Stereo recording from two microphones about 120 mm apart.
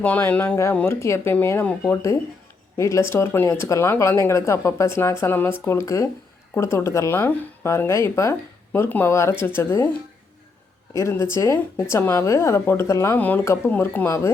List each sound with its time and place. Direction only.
0.0 s speech: 15° left (ahead or behind)
10.9 s speech: 25° left (ahead or behind)